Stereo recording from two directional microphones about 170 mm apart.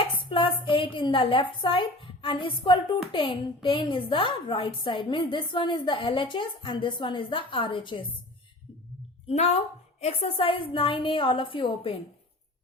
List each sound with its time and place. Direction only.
0.0 s a woman's voice: 30° left (ahead or behind)
9.2 s a woman's voice: 40° left (ahead or behind)